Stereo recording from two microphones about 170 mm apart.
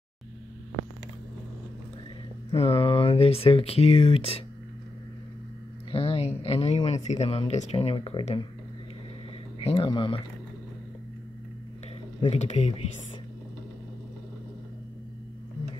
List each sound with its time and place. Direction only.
2.5 s speech: 35° left (ahead or behind)
5.9 s speech: 35° left (ahead or behind)
9.6 s speech: 35° left (ahead or behind)
12.3 s speech: 40° left (ahead or behind)